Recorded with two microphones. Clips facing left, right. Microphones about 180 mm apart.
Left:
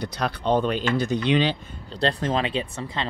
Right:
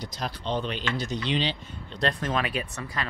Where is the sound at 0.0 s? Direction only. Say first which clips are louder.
Left 7 dB; 65° left (ahead or behind).